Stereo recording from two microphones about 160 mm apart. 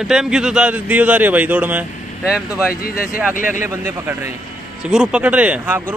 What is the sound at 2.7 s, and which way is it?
Speech, 65° left (ahead or behind).